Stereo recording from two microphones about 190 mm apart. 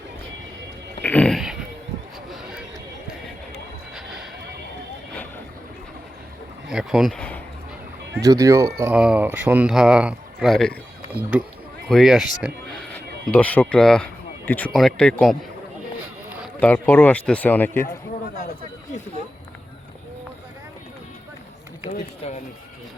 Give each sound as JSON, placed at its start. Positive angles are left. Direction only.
{"t": 1.0, "sound": "a sound", "side_deg": 5}
{"t": 3.9, "sound": "music", "side_deg": 0}
{"t": 6.7, "sound": "speech", "side_deg": -5}
{"t": 8.2, "sound": "speech", "side_deg": -15}
{"t": 11.9, "sound": "speech", "side_deg": 0}
{"t": 12.4, "sound": "a sound", "side_deg": 5}
{"t": 13.2, "sound": "speech", "side_deg": 5}
{"t": 16.6, "sound": "a man's voice", "side_deg": 10}
{"t": 21.8, "sound": "a sound", "side_deg": 35}